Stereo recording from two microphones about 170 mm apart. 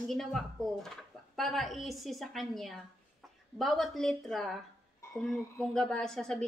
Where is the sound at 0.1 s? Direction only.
Centre (ahead or behind).